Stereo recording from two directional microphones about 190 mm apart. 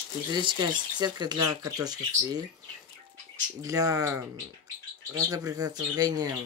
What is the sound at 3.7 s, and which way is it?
Speech, 15° right (ahead or behind).